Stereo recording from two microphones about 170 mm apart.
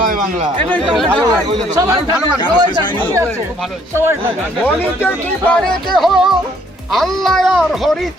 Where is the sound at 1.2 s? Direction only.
20° right (ahead or behind).